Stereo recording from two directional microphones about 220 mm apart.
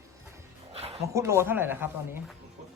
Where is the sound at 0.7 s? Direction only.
25° right (ahead or behind).